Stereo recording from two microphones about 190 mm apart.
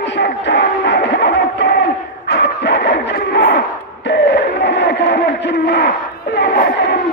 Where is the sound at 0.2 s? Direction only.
70° left (ahead or behind).